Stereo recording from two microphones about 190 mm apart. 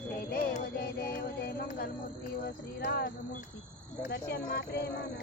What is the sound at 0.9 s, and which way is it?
Music, 50° left (ahead or behind).